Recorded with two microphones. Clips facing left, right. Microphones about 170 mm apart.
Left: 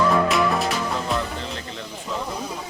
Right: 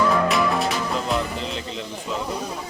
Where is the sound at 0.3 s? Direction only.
Centre (ahead or behind).